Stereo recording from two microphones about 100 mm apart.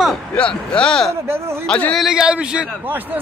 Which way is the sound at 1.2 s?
25° right (ahead or behind).